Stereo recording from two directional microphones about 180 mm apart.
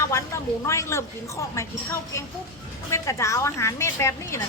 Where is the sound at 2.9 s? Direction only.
15° left (ahead or behind).